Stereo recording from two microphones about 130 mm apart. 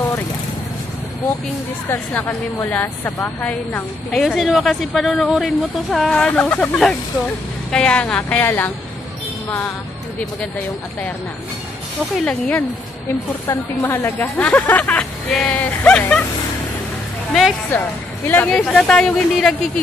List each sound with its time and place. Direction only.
1.9 s a woman's voice: 15° left (ahead or behind)
4.1 s a woman's voice: centre (ahead or behind)
12.3 s a woman's voice: 10° left (ahead or behind)
17.3 s speech: centre (ahead or behind)
17.7 s a woman's voice: 15° left (ahead or behind)
18.5 s speech: 5° left (ahead or behind)